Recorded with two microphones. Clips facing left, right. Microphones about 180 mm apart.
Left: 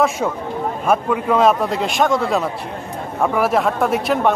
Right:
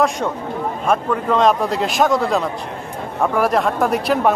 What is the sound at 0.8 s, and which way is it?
Speech, 5° left (ahead or behind).